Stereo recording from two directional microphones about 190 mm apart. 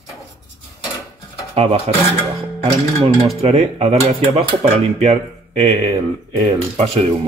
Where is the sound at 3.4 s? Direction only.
35° right (ahead or behind).